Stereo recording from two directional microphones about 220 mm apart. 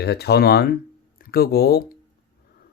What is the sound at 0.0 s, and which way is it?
Speech, 45° left (ahead or behind).